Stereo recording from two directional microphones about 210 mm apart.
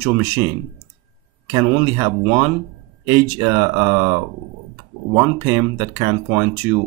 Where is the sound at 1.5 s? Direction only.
15° right (ahead or behind).